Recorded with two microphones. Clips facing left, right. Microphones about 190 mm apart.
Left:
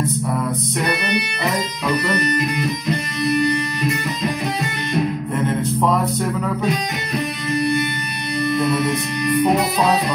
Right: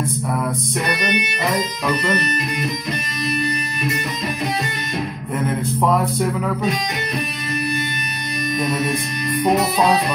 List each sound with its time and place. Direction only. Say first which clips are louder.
1.0 s music: even; 20° right (ahead or behind)